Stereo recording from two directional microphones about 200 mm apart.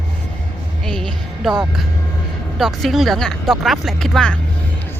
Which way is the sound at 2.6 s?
Centre (ahead or behind).